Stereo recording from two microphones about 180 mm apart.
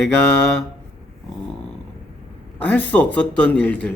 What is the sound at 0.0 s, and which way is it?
Speech, 10° left (ahead or behind).